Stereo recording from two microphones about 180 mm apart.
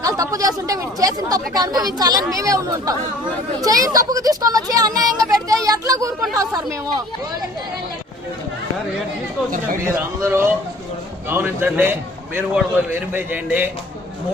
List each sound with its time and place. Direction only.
0.0 s speech: 20° right (ahead or behind)
9.8 s a man's voice: 15° right (ahead or behind)